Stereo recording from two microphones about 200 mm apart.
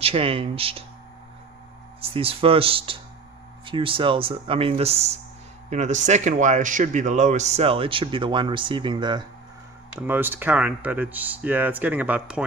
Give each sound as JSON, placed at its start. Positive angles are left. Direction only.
{"t": 0.0, "sound": "speech", "side_deg": -30}
{"t": 2.0, "sound": "speech", "side_deg": -30}
{"t": 9.9, "sound": "speech", "side_deg": -10}